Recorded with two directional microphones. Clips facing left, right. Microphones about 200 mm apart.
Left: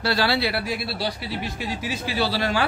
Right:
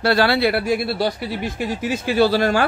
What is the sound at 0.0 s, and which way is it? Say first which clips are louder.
A man's voice: right 6 dB; 55° right (ahead or behind).